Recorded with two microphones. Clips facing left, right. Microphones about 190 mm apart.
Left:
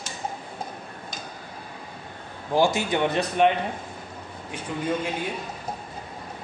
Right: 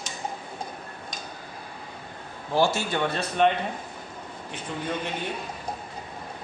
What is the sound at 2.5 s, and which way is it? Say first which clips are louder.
Speech: left 2 dB; 15° left (ahead or behind).